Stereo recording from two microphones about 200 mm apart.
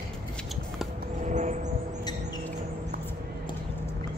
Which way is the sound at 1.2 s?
35° right (ahead or behind).